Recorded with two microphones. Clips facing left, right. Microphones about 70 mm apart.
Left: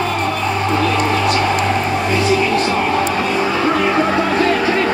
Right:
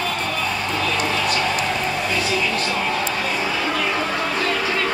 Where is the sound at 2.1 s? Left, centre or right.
Left.